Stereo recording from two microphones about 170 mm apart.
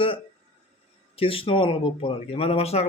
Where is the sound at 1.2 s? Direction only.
35° left (ahead or behind).